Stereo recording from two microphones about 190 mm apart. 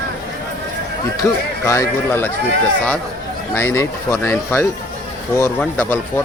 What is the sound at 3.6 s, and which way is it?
Speech, 15° left (ahead or behind).